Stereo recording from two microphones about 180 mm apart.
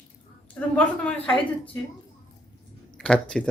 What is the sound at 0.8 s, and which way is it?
Speech, 5° left (ahead or behind).